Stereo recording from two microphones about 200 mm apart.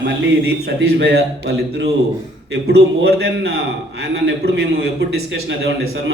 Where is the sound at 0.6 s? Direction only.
65° right (ahead or behind).